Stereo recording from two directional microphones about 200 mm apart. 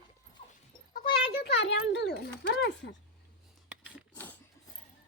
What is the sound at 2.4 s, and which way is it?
Speech, 60° left (ahead or behind).